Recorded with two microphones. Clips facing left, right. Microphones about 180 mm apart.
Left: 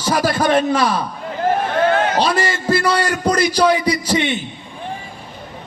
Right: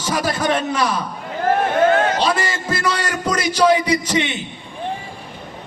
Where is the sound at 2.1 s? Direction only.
35° left (ahead or behind).